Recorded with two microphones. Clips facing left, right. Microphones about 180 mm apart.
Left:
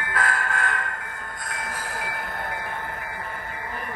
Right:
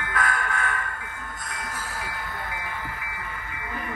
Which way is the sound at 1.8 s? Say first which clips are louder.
Left 2 dB; 50° left (ahead or behind).